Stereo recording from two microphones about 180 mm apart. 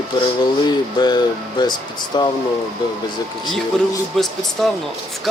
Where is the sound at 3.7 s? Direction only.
Centre (ahead or behind).